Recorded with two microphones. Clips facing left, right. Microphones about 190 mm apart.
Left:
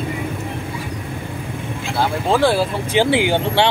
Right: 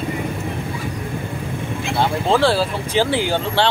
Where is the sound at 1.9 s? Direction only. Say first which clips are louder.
Even; 10° left (ahead or behind).